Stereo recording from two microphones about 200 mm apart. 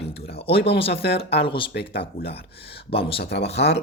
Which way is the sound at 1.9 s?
50° left (ahead or behind).